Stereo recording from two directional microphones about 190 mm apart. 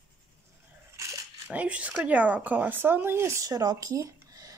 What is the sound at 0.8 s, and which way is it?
Speech, 15° right (ahead or behind).